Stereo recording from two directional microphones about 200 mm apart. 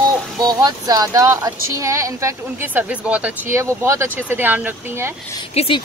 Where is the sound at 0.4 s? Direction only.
20° right (ahead or behind).